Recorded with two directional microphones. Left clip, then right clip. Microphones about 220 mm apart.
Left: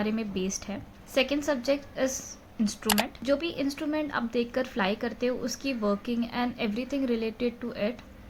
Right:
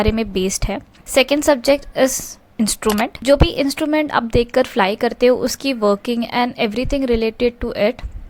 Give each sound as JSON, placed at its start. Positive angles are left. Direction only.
{"t": 0.0, "sound": "a woman's voice", "side_deg": -45}